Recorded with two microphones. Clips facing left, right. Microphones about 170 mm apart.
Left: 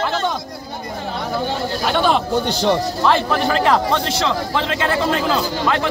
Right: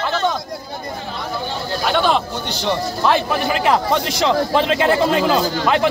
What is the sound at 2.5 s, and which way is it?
Speech, 45° left (ahead or behind).